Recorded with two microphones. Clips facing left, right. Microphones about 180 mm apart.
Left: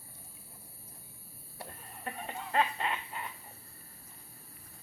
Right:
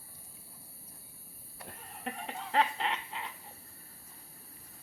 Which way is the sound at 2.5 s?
90° right.